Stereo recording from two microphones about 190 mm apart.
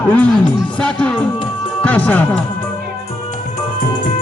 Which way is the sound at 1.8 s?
10° left (ahead or behind).